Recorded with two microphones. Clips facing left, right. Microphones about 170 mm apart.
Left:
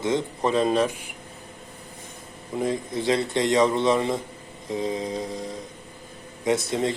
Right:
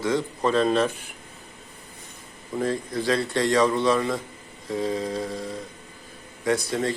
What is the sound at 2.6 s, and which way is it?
Speech, 20° left (ahead or behind).